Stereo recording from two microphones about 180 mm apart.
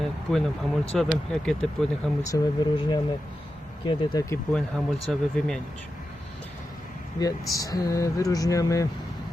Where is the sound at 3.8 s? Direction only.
20° left (ahead or behind).